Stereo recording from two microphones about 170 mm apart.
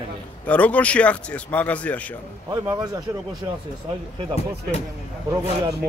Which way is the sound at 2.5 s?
20° right (ahead or behind).